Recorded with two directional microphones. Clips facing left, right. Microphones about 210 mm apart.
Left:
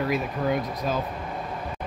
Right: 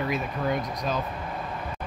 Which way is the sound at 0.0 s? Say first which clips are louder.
Left 2 dB; 5° left (ahead or behind).